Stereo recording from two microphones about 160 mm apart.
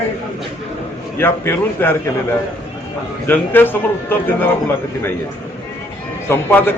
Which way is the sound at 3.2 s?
10° left (ahead or behind).